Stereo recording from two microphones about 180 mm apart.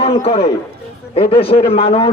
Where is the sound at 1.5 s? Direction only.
30° left (ahead or behind).